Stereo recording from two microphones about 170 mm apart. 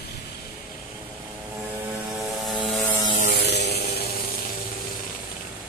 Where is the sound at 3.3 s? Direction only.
80° left.